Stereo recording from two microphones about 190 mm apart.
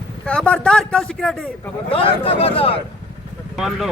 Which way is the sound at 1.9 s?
30° left (ahead or behind).